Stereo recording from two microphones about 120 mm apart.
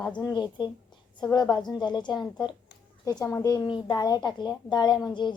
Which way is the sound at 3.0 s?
25° left (ahead or behind).